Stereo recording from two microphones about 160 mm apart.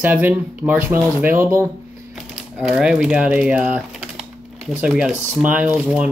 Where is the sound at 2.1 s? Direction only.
5° right (ahead or behind).